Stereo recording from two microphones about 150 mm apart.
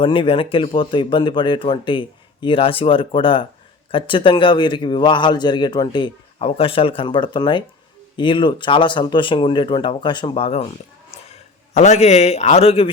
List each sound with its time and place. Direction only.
0.0 s a man's voice: 35° left (ahead or behind)